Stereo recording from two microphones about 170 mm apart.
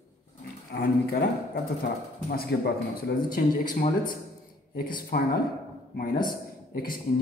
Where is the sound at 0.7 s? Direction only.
65° left (ahead or behind).